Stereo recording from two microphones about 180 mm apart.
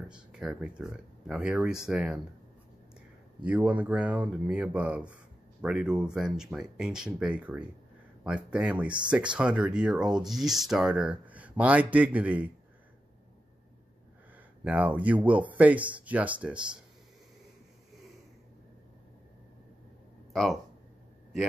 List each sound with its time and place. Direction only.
0.1 s speech: 5° right (ahead or behind)
3.4 s speech: 10° right (ahead or behind)
14.6 s speech: 10° right (ahead or behind)